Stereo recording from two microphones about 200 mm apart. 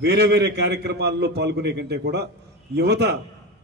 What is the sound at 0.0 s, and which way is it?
A man's voice, 55° right (ahead or behind).